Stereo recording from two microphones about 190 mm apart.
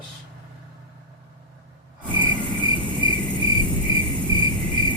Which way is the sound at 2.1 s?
25° left (ahead or behind).